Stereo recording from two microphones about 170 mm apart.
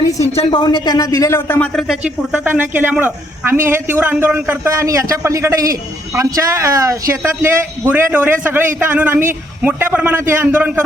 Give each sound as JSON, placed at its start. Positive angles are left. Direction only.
{"t": 0.2, "sound": "speech", "side_deg": 35}
{"t": 2.3, "sound": "a man's voice", "side_deg": -10}